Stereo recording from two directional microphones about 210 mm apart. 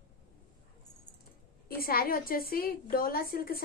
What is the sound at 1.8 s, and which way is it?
A woman's voice, 45° left (ahead or behind).